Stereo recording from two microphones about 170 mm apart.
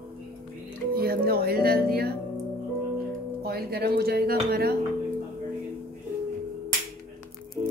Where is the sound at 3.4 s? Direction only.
65° right (ahead or behind).